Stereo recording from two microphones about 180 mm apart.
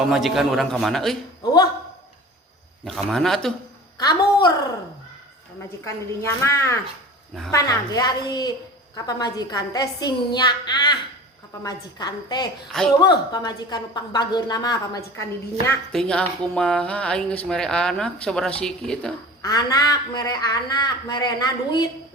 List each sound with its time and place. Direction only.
0.1 s speech: centre (ahead or behind)
2.8 s speech: 5° left (ahead or behind)
3.9 s speech: 20° left (ahead or behind)
5.8 s a woman's voice: 15° left (ahead or behind)
15.9 s speech: 5° left (ahead or behind)
19.4 s speech: 20° left (ahead or behind)